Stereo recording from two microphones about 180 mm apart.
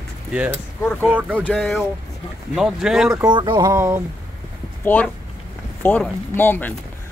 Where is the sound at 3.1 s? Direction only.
20° right (ahead or behind).